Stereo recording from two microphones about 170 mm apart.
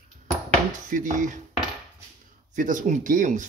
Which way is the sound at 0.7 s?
50° right (ahead or behind).